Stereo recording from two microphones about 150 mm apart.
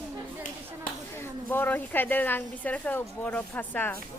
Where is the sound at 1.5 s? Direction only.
10° left (ahead or behind).